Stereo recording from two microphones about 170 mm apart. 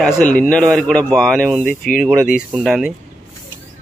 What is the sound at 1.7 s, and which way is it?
Speech, 55° left (ahead or behind).